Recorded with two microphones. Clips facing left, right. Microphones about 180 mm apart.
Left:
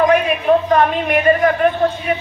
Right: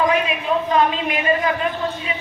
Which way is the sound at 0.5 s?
55° left (ahead or behind).